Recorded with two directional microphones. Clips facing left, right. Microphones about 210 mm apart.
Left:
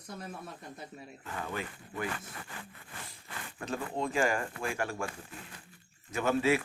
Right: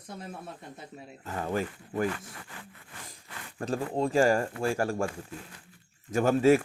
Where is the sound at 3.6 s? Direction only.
40° right (ahead or behind).